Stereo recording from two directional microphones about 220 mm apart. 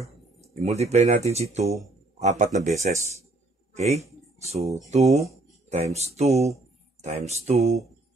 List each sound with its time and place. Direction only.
0.6 s a man's voice: 30° right (ahead or behind)